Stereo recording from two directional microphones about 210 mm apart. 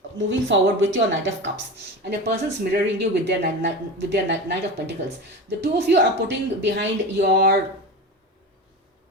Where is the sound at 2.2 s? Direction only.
50° right (ahead or behind).